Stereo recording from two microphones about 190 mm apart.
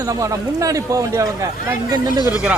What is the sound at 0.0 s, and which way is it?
Speech, 20° right (ahead or behind).